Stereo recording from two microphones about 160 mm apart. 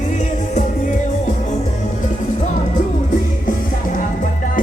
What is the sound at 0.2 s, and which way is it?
Music, 45° left (ahead or behind).